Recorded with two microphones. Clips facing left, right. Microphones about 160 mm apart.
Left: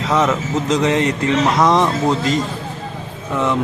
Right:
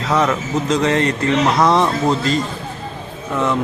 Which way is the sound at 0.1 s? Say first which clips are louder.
Even; 5° left (ahead or behind).